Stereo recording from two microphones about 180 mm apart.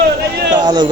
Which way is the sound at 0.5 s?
25° right (ahead or behind).